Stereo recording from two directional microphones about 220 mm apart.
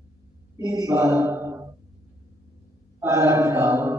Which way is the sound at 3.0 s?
15° right (ahead or behind).